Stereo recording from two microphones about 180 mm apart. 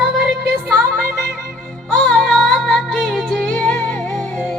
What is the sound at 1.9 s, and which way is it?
Music, 5° left (ahead or behind).